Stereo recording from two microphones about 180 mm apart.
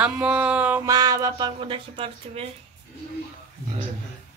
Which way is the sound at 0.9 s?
20° right (ahead or behind).